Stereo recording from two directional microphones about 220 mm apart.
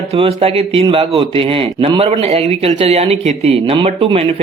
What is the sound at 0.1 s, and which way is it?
A man's voice, 25° right (ahead or behind).